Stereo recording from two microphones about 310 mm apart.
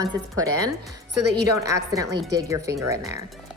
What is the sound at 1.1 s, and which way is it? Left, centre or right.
Speech, right.